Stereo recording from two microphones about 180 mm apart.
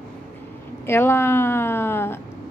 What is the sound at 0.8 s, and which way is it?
A woman's voice, 15° left (ahead or behind).